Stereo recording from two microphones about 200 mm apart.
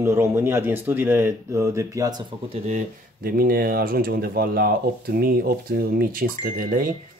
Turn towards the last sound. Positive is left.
turn(degrees=-45)  # may be behind; listen again after turning